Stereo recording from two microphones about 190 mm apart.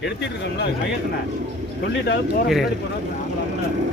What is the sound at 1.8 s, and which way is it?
Speech, 60° left (ahead or behind).